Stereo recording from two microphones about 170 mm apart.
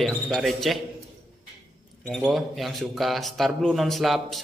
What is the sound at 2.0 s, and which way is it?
Speech, centre (ahead or behind).